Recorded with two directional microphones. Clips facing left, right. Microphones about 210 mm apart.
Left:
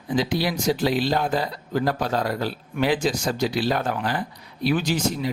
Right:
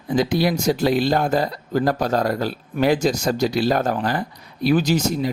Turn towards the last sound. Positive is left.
turn(degrees=-40)  # may be behind; listen again after turning